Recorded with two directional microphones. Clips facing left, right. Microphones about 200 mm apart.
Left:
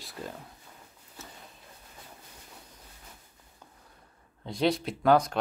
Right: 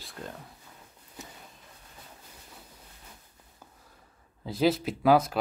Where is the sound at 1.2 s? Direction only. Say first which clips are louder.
Right 2 dB; 15° right (ahead or behind).